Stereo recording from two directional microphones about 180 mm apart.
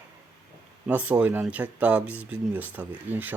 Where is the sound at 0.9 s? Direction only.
10° right (ahead or behind).